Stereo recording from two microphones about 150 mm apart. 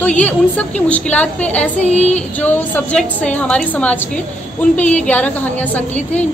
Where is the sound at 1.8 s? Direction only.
45° left (ahead or behind).